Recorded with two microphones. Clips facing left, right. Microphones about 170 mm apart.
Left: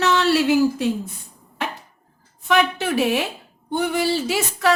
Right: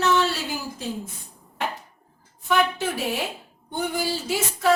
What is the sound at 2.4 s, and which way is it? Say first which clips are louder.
A woman's voice: left 3 dB; 75° left (ahead or behind).